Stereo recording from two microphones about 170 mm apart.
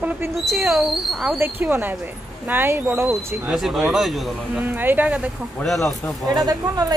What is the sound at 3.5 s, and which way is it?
Speech, 5° right (ahead or behind).